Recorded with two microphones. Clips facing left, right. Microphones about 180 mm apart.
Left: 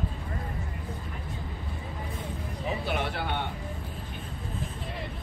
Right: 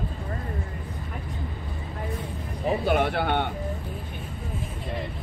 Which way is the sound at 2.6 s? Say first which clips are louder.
Right 8 dB; 50° right (ahead or behind).